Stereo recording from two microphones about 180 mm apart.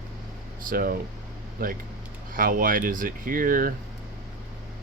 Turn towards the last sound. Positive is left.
turn(degrees=-50)  # may be behind; listen again after turning